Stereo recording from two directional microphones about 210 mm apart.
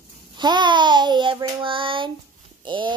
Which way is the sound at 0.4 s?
20° right (ahead or behind).